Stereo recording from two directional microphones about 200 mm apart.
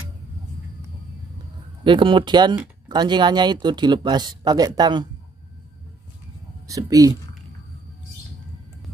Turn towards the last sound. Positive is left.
turn(degrees=-15)  # may be behind; listen again after turning